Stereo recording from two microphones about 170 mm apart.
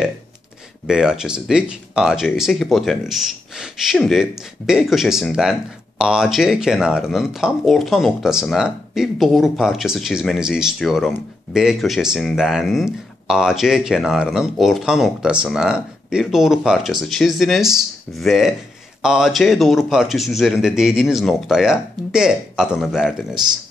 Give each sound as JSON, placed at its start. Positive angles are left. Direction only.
{"t": 0.8, "sound": "speech", "side_deg": -5}